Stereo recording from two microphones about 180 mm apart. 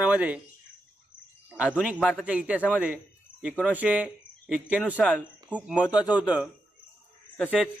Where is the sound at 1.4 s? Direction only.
5° right (ahead or behind).